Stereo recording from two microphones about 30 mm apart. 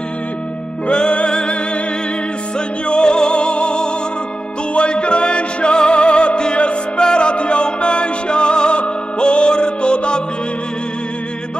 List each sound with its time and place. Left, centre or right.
0.8 s music: left
2.9 s music: left